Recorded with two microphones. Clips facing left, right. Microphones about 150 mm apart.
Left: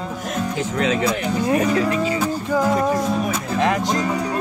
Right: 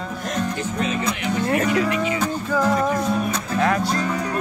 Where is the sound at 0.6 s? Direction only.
90° left.